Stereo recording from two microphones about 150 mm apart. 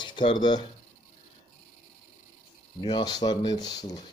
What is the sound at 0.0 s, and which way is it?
Speech, 35° left (ahead or behind).